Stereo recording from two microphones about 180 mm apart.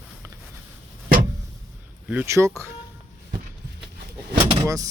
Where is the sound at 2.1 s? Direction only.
10° right (ahead or behind).